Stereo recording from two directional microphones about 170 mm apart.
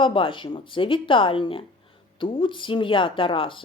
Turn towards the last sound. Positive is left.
turn(degrees=30)  # may be behind; listen again after turning